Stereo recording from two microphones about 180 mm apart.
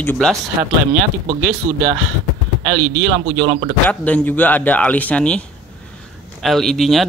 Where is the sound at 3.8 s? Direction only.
10° left (ahead or behind).